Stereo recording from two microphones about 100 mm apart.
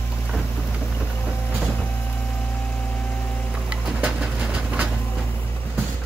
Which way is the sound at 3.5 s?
10° right (ahead or behind).